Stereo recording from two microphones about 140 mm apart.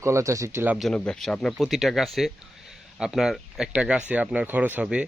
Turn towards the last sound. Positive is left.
turn(degrees=-10)  # may be behind; listen again after turning